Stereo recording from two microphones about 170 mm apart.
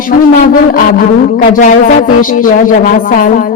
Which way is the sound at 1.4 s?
55° left (ahead or behind).